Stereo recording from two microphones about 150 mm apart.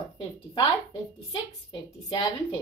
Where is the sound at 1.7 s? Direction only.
30° left (ahead or behind).